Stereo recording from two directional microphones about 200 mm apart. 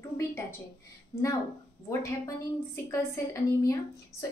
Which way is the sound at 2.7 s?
15° left (ahead or behind).